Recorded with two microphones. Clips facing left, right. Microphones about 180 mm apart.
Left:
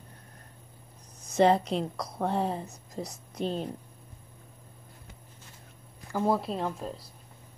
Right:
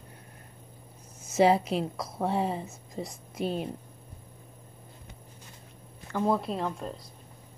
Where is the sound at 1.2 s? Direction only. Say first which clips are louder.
Even; 5° right (ahead or behind).